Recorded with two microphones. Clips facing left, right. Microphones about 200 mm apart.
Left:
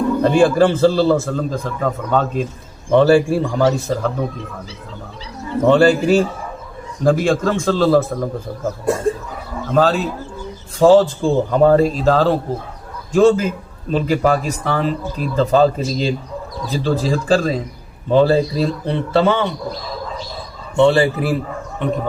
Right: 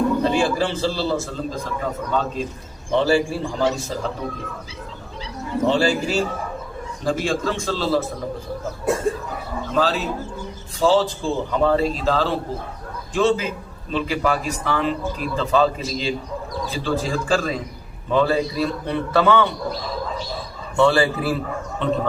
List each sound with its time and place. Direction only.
0.2 s a man's voice: 55° left (ahead or behind)
5.6 s a man's voice: 55° left (ahead or behind)
9.7 s a man's voice: 45° left (ahead or behind); by 19.5 s 20° left (ahead or behind)
20.7 s a man's voice: 20° left (ahead or behind)